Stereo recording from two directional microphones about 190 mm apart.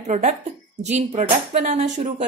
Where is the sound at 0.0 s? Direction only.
35° right (ahead or behind).